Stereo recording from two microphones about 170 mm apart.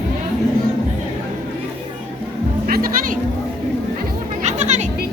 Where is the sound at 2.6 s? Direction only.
55° right (ahead or behind).